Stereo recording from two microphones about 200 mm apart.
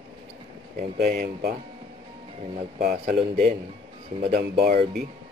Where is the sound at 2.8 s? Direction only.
50° right (ahead or behind).